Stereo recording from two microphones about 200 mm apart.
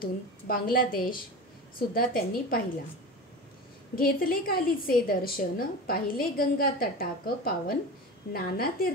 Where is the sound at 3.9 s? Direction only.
45° left (ahead or behind).